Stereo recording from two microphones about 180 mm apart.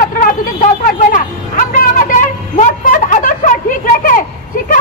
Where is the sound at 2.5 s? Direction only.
45° left (ahead or behind).